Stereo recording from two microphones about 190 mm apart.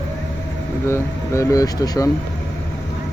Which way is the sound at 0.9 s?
15° left (ahead or behind).